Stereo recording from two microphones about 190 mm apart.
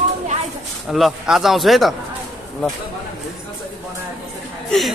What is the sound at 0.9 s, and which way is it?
A man's voice, centre (ahead or behind).